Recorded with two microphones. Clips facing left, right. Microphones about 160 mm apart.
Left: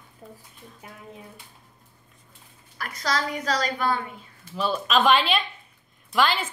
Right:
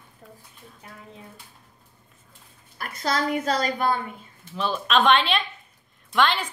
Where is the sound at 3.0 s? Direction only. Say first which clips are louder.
Right 3 dB; 25° right (ahead or behind).